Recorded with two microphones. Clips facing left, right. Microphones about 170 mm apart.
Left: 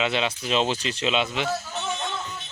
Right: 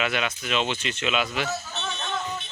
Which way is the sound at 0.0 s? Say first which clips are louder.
Left 2 dB; 25° left (ahead or behind).